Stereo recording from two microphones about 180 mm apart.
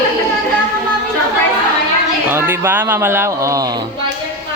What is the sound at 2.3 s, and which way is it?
Speech, 15° right (ahead or behind).